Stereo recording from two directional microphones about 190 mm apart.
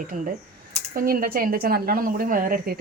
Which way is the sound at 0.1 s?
45° right (ahead or behind).